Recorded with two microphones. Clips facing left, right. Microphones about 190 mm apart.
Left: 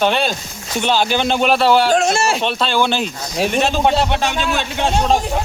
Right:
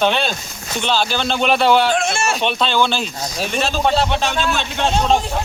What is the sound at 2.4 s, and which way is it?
A man's voice, 5° left (ahead or behind).